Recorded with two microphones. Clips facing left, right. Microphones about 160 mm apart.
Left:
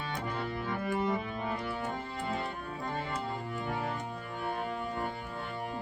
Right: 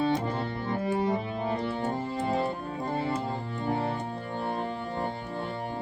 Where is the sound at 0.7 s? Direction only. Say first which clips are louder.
Right 5 dB; 30° right (ahead or behind).